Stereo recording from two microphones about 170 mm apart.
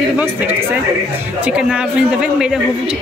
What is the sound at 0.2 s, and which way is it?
Speech, 10° right (ahead or behind).